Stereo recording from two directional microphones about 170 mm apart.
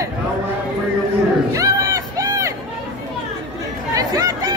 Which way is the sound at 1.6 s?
20° right (ahead or behind).